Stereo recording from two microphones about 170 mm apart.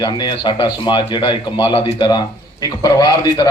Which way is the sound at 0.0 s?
25° left (ahead or behind).